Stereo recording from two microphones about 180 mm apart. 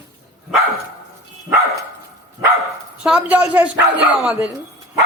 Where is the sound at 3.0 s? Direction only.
5° right (ahead or behind).